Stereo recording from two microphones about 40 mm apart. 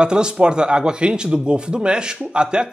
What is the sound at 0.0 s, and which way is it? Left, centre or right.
Speech, right.